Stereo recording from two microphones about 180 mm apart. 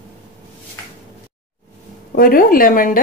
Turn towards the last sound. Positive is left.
turn(degrees=50)  # may be behind; listen again after turning